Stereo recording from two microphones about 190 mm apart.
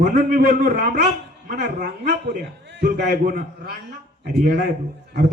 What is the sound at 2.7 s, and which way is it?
Speech, 50° right (ahead or behind).